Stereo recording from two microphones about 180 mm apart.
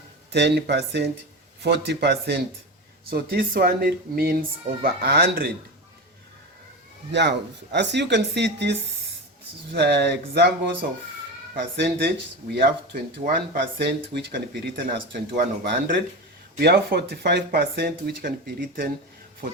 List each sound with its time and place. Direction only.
0.3 s speech: 70° right (ahead or behind)
3.1 s speech: 55° right (ahead or behind)
7.1 s speech: 70° right (ahead or behind); by 18.9 s 55° right (ahead or behind)